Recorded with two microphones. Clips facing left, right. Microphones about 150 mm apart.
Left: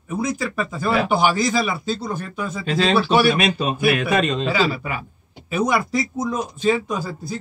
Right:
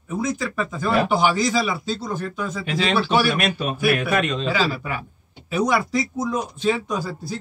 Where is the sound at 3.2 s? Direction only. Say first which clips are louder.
Left 4 dB; 85° left.